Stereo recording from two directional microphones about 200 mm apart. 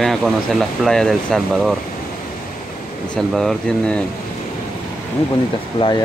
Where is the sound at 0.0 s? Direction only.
Centre (ahead or behind).